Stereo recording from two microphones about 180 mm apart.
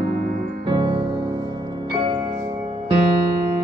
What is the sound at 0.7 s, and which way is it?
Music, 25° right (ahead or behind).